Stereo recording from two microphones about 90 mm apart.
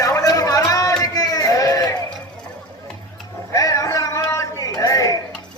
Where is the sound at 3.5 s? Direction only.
40° left (ahead or behind).